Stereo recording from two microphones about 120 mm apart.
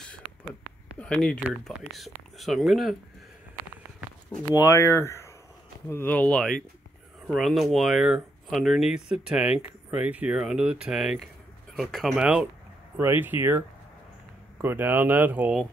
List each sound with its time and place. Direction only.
0.9 s speech: 10° left (ahead or behind)
4.5 s speech: 25° left (ahead or behind); by 12.4 s 5° right (ahead or behind)
13.0 s speech: 15° right (ahead or behind)
14.6 s speech: 20° right (ahead or behind)